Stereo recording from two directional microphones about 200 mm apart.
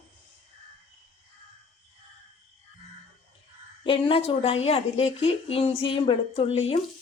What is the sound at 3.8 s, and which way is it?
A woman's voice, 25° left (ahead or behind).